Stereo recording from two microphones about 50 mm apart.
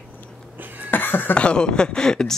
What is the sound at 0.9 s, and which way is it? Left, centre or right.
Cough, left.